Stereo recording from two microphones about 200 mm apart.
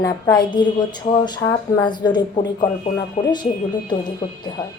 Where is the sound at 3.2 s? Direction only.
30° left (ahead or behind).